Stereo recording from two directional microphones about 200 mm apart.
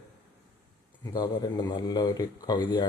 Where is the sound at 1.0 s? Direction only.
20° left (ahead or behind).